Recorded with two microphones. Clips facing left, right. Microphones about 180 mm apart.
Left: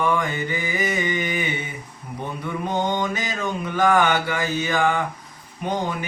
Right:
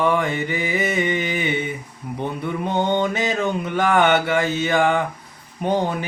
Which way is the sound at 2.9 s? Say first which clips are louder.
Right 5 dB; 25° right (ahead or behind).